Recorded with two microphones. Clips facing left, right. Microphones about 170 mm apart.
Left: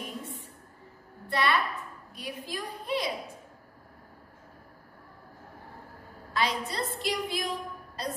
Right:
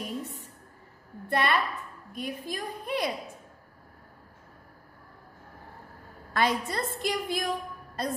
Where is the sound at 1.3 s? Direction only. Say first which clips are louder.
Right 1 dB; 50° right (ahead or behind).